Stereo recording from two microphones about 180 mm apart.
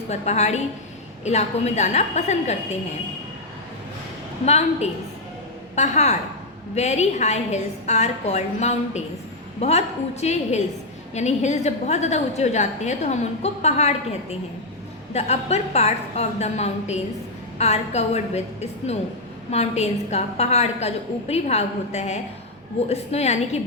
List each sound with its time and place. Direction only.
0.1 s a woman's voice: 40° left (ahead or behind)
4.4 s a woman's voice: 35° left (ahead or behind)